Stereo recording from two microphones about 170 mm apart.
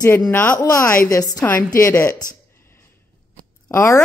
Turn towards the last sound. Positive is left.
turn(degrees=15)  # may be behind; listen again after turning